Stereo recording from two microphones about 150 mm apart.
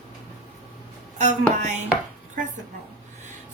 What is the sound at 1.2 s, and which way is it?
Speech, 55° right (ahead or behind).